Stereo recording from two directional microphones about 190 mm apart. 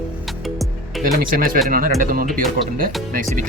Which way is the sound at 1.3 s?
50° right (ahead or behind).